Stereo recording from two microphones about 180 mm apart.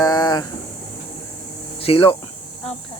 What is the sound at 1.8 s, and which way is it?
Speech, 30° left (ahead or behind).